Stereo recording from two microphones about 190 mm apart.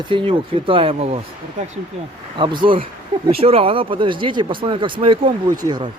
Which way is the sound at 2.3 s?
25° right (ahead or behind).